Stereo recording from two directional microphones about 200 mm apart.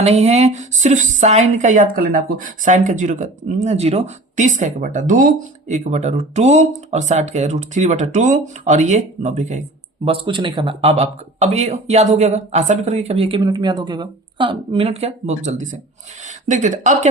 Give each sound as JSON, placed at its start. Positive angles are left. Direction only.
{"t": 0.0, "sound": "speech", "side_deg": -30}